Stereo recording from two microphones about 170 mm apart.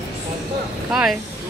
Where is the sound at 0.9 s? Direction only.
5° right (ahead or behind).